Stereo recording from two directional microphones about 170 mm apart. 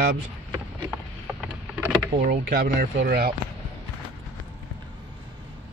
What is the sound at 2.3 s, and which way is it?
Speech, 65° right (ahead or behind).